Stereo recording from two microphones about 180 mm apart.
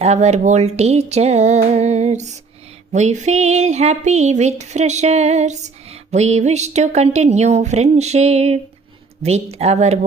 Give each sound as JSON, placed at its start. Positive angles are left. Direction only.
{"t": 0.0, "sound": "speech", "side_deg": -35}